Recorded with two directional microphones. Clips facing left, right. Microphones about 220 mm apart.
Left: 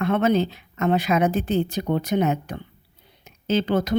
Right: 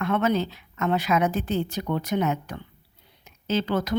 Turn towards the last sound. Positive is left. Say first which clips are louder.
# left 3 dB
turn(degrees=20)  # may be behind; listen again after turning